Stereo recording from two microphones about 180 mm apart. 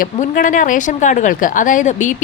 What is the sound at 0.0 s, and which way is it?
A woman's voice, 45° left (ahead or behind).